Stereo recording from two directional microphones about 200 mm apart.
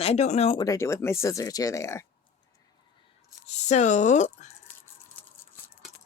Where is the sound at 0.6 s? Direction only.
15° left (ahead or behind).